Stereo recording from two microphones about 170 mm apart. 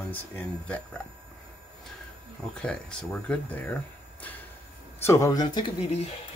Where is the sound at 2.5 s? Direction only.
5° left (ahead or behind).